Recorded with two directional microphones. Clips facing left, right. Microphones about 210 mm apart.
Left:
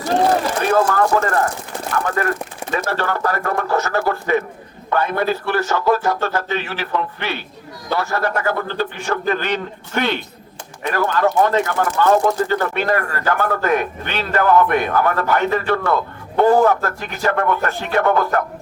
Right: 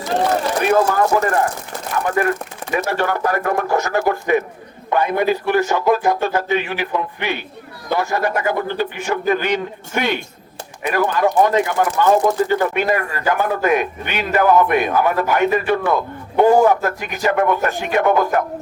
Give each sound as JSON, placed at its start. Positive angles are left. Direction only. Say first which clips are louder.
{"t": 0.7, "sound": "speech", "louder": "even", "side_deg": -15}
{"t": 2.7, "sound": "speech", "louder": "right 2 dB", "side_deg": -15}